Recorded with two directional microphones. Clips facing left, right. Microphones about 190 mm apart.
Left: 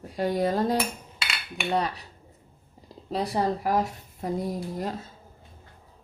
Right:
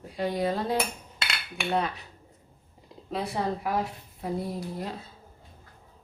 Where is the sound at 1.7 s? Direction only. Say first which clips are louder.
Left 1 dB; 35° left (ahead or behind).